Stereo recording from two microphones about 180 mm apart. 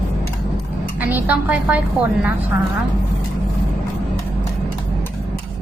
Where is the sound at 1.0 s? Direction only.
10° right (ahead or behind).